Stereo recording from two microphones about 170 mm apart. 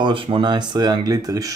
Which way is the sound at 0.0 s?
30° right (ahead or behind).